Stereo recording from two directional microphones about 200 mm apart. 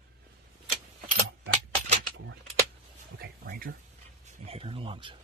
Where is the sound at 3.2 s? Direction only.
50° right (ahead or behind).